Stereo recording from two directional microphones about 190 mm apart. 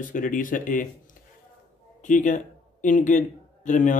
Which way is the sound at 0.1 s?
45° left (ahead or behind).